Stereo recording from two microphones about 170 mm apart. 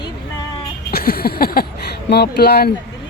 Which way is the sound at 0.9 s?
65° left (ahead or behind).